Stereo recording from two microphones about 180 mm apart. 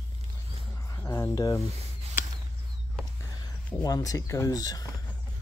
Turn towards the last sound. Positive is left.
turn(degrees=20)  # may be behind; listen again after turning